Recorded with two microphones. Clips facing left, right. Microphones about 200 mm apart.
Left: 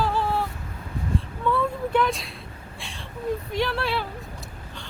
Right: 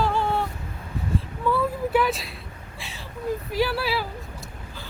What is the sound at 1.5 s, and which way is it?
Vehicle, 5° right (ahead or behind).